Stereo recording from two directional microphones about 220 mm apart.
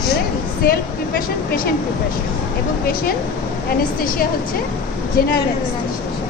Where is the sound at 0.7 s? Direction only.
40° left (ahead or behind).